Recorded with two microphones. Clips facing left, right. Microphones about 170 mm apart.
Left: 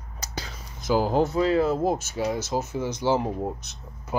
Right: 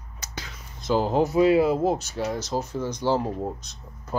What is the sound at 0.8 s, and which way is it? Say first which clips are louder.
Speech: even; 5° left (ahead or behind).